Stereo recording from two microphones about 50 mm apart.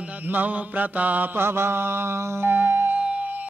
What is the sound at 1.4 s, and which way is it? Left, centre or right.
Mantra, right.